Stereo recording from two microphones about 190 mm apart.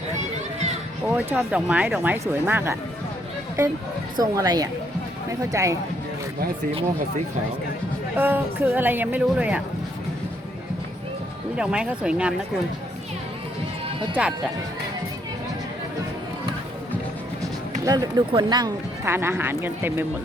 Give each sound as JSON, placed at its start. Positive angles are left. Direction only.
{"t": 1.0, "sound": "speech", "side_deg": -5}
{"t": 4.2, "sound": "a woman's voice", "side_deg": -20}
{"t": 8.1, "sound": "speech", "side_deg": -10}
{"t": 11.5, "sound": "speech", "side_deg": -5}
{"t": 14.2, "sound": "speech", "side_deg": -5}
{"t": 17.4, "sound": "speech", "side_deg": -20}